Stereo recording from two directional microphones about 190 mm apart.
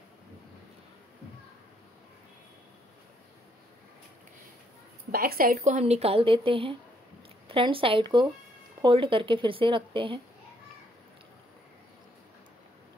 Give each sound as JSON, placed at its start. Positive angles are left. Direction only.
{"t": 5.1, "sound": "speech", "side_deg": -55}